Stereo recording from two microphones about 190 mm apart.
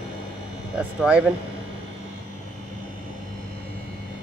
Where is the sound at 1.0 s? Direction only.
5° right (ahead or behind).